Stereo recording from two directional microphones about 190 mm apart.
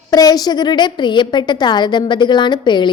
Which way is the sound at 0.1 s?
20° left (ahead or behind).